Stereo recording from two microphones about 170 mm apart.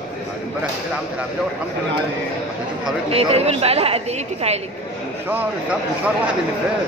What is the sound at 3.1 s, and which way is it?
Speech, 35° right (ahead or behind).